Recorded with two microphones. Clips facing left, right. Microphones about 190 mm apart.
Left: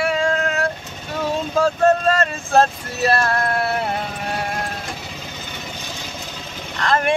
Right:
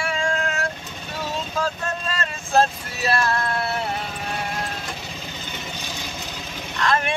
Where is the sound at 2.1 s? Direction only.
45° left (ahead or behind).